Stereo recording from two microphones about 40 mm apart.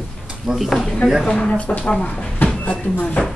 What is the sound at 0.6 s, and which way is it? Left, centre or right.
Speech, centre.